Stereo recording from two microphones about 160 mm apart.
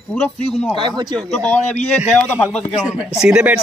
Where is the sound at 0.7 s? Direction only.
30° right (ahead or behind).